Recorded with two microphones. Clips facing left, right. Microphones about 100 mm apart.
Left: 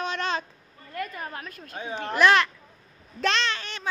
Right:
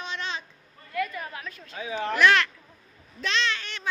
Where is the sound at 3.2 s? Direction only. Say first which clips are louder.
Left 3 dB; 55° left (ahead or behind).